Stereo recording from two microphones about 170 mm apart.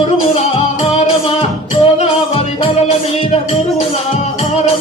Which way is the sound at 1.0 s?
35° left (ahead or behind).